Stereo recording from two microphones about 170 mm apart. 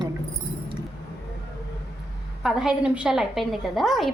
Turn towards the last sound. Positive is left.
turn(degrees=0)  # may be behind; listen again after turning